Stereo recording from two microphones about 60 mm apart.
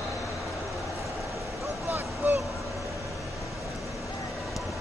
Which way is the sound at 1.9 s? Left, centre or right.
Right.